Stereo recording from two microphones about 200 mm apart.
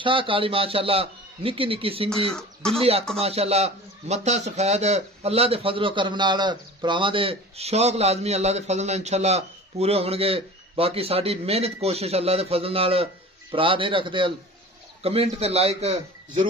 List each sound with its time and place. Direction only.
0.0 s a man's voice: 25° right (ahead or behind)
2.3 s speech: 5° left (ahead or behind)
2.8 s a man's voice: 30° right (ahead or behind)